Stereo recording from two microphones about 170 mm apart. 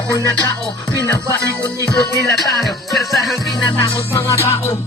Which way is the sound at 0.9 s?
15° left (ahead or behind).